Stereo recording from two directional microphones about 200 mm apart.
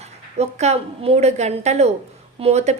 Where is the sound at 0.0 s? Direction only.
35° right (ahead or behind).